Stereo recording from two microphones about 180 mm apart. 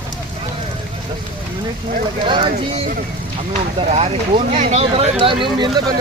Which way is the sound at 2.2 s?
30° right (ahead or behind).